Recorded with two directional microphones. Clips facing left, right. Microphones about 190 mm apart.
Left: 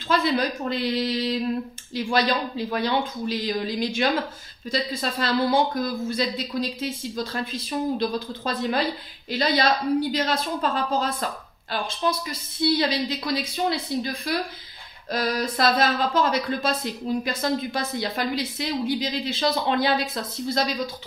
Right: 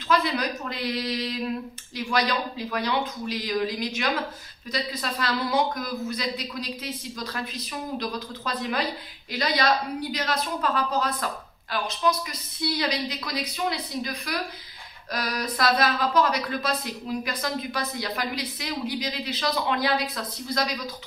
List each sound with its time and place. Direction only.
0.1 s speech: 30° left (ahead or behind)